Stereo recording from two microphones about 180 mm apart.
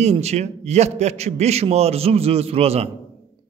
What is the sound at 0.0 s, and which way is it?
A man's voice, 35° right (ahead or behind).